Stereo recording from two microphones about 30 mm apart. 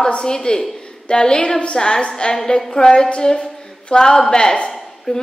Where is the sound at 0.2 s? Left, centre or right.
Left.